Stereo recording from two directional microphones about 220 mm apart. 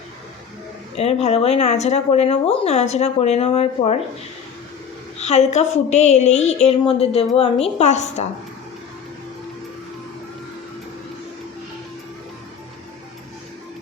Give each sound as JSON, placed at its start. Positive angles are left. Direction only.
{"t": 0.9, "sound": "speech", "side_deg": 30}
{"t": 5.1, "sound": "a woman's voice", "side_deg": 30}